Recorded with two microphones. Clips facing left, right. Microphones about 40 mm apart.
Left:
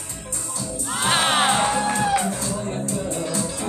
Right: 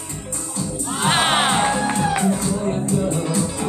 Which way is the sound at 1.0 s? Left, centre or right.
Centre.